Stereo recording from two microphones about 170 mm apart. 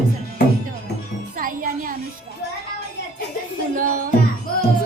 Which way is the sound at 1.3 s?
55° right (ahead or behind).